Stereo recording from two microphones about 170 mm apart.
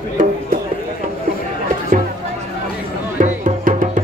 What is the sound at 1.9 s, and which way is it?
Speech, 50° right (ahead or behind).